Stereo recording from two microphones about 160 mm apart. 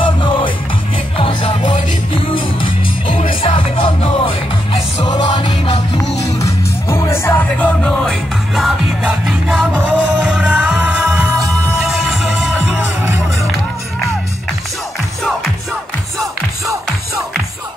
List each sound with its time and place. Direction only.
0.0 s music: 30° left (ahead or behind)
6.4 s music: 15° left (ahead or behind); by 11.1 s 5° right (ahead or behind)
11.2 s music: 20° right (ahead or behind)
12.0 s music: centre (ahead or behind)